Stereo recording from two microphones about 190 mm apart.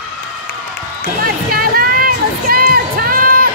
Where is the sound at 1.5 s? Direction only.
50° right (ahead or behind).